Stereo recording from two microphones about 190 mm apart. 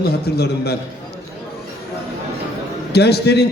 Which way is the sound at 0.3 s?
55° left (ahead or behind).